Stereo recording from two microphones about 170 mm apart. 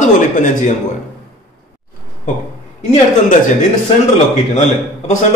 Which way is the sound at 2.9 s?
45° left (ahead or behind).